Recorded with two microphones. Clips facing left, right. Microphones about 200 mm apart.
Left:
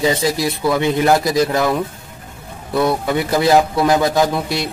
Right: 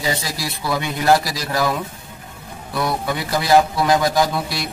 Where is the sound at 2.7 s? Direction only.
25° left (ahead or behind).